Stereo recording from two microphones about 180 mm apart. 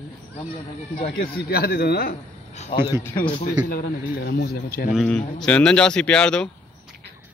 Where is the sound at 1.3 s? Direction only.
60° left (ahead or behind).